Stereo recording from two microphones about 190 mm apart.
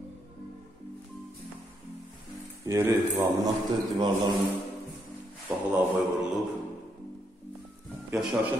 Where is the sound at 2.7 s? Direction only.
15° right (ahead or behind).